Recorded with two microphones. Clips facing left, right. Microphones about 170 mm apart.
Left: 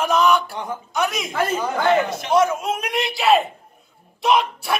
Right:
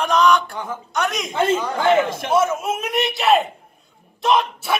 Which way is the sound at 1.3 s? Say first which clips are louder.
Right 7 dB; 25° right (ahead or behind).